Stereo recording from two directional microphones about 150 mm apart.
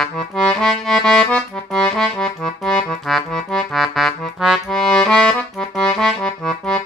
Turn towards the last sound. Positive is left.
turn(degrees=5)  # may be behind; listen again after turning